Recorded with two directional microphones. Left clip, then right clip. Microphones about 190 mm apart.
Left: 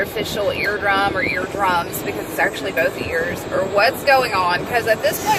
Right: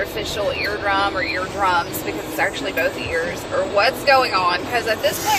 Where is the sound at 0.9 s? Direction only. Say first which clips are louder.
Left 1 dB; 20° left (ahead or behind).